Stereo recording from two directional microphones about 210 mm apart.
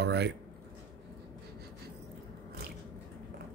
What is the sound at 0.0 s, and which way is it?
Speech, 55° right (ahead or behind).